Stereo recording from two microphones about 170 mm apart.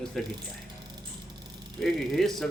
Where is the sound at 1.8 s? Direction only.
Centre (ahead or behind).